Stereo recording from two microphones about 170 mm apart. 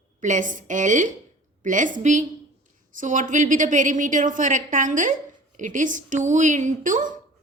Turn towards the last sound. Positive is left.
turn(degrees=-50)  # may be behind; listen again after turning